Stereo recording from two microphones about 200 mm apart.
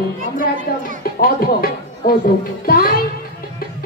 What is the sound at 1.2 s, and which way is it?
Speech, 45° left (ahead or behind).